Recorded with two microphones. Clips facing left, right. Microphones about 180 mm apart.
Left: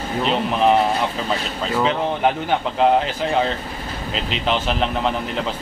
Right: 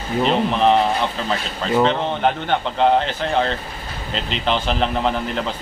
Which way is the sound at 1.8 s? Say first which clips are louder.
Right 1 dB; 5° left (ahead or behind).